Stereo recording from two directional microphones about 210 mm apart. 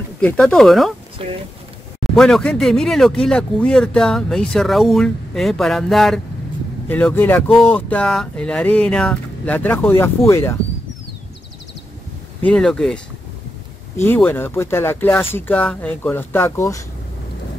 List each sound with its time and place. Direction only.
0.2 s speech: 5° left (ahead or behind)
1.2 s speech: 25° right (ahead or behind)
2.1 s speech: 5° left (ahead or behind)
12.4 s speech: 5° left (ahead or behind)